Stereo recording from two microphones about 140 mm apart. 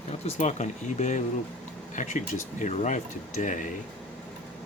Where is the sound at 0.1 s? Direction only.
50° left (ahead or behind).